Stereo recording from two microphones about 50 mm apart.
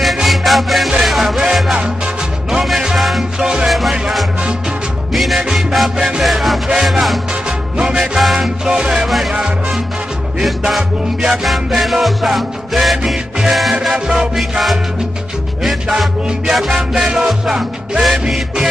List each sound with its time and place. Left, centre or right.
0.0 s music: centre
5.1 s music: centre
6.1 s music: centre
7.7 s music: centre
8.0 s music: centre
8.6 s music: centre
9.0 s music: centre
9.3 s music: centre
10.4 s music: centre
15.6 s music: centre